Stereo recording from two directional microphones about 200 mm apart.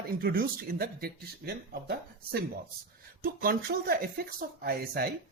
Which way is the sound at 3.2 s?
45° right (ahead or behind).